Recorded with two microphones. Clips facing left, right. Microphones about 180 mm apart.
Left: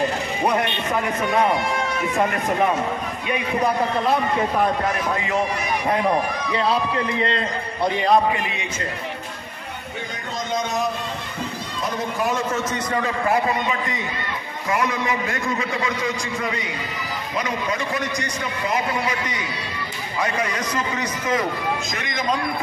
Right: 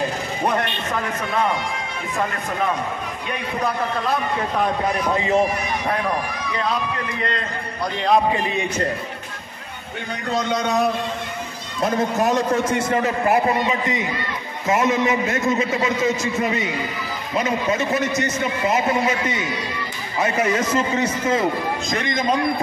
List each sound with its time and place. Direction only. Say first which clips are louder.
5.1 s a man's voice: right 4 dB; 30° right (ahead or behind)
6.0 s a man's voice: left 3 dB; 30° left (ahead or behind)
10.3 s a man's voice: right 4 dB; 65° right (ahead or behind)
11.8 s a man's voice: right 5 dB; 45° right (ahead or behind)
13.7 s a man's voice: right 3 dB; 20° right (ahead or behind)